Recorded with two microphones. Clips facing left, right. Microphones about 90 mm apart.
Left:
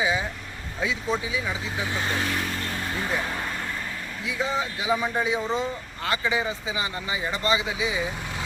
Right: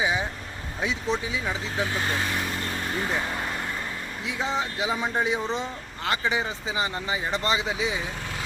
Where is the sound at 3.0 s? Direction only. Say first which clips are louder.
Even; 20° right (ahead or behind).